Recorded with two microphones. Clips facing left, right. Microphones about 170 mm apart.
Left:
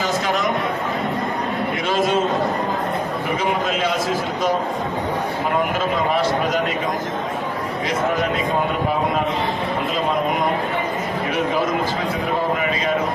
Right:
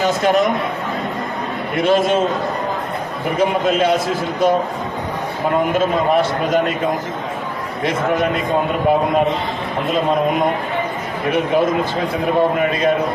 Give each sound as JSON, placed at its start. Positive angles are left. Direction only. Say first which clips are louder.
{"t": 1.7, "sound": "a man's voice", "louder": "right 7 dB", "side_deg": -55}